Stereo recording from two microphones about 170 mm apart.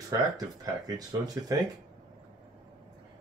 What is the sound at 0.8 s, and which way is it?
Speech, 20° right (ahead or behind).